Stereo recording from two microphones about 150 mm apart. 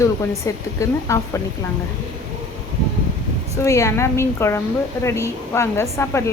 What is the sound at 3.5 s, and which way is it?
A woman's voice, 20° left (ahead or behind).